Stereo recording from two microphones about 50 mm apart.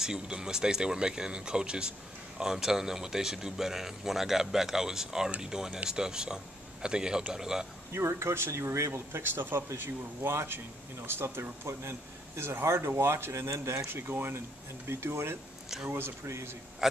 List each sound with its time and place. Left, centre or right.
0.0 s speech: centre
7.9 s speech: right
9.1 s speech: right
13.3 s speech: right
13.8 s speech: right
14.9 s speech: right